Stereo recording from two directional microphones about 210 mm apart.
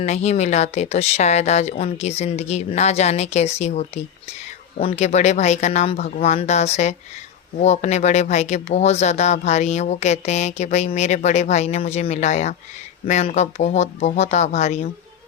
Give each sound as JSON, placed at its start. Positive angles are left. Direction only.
{"t": 0.0, "sound": "speech", "side_deg": 30}